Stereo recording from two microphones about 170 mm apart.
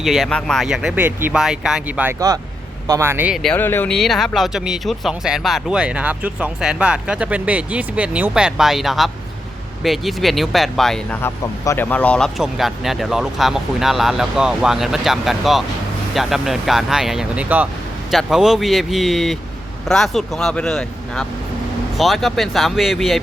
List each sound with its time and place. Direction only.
0.0 s speech: centre (ahead or behind)
2.1 s a man's voice: 20° right (ahead or behind)
3.4 s speech: 10° left (ahead or behind)
11.2 s speech: 15° left (ahead or behind); by 23.2 s centre (ahead or behind)